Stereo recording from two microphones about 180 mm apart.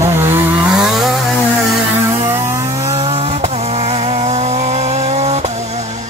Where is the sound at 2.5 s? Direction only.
20° right (ahead or behind).